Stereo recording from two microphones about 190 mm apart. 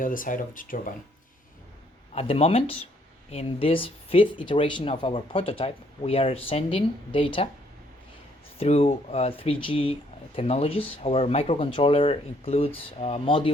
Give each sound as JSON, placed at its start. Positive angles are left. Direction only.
{"t": 0.0, "sound": "speech", "side_deg": 45}
{"t": 2.1, "sound": "speech", "side_deg": 30}
{"t": 8.5, "sound": "speech", "side_deg": 35}